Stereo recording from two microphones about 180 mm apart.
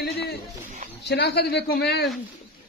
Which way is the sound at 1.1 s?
65° left (ahead or behind).